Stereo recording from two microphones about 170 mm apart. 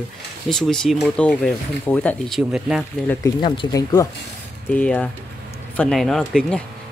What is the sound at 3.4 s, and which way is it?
Speech, 25° left (ahead or behind).